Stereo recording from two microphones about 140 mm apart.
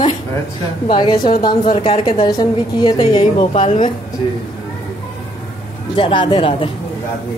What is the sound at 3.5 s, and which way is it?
Speech, 55° left (ahead or behind).